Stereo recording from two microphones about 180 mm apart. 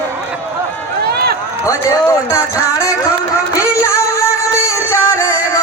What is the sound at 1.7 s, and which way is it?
Speech, 20° left (ahead or behind).